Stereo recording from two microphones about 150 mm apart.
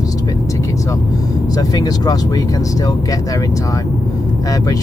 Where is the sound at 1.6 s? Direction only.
25° left (ahead or behind).